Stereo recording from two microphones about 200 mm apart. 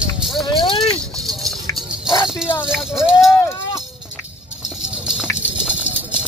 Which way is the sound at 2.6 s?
Centre (ahead or behind).